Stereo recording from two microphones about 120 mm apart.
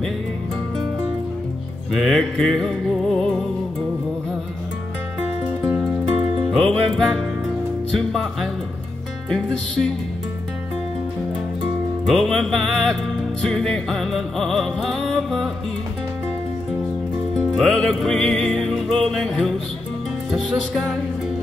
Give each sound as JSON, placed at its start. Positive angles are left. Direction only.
{"t": 1.9, "sound": "music", "side_deg": 0}
{"t": 5.2, "sound": "music", "side_deg": -10}
{"t": 6.5, "sound": "music", "side_deg": 0}
{"t": 12.1, "sound": "music", "side_deg": 0}
{"t": 17.6, "sound": "music", "side_deg": 0}